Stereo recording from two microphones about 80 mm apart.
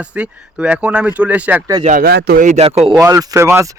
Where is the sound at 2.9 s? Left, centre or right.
Right.